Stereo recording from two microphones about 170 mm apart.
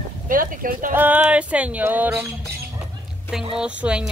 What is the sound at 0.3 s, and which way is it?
Speech, 55° right (ahead or behind).